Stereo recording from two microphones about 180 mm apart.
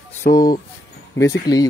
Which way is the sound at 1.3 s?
20° left (ahead or behind).